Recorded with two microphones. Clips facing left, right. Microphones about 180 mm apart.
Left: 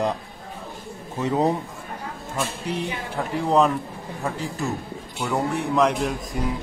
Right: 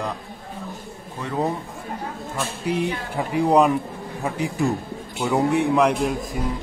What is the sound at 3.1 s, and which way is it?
Speech, 10° right (ahead or behind).